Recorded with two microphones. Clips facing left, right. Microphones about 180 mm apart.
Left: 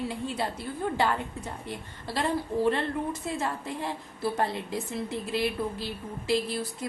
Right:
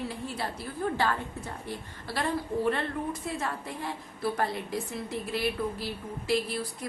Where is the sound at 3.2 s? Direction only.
25° left (ahead or behind).